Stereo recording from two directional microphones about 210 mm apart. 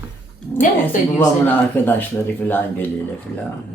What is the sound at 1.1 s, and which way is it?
Speech, 10° left (ahead or behind).